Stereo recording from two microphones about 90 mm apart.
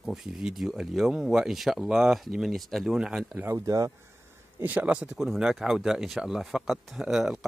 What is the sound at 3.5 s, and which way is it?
Speech, 40° right (ahead or behind).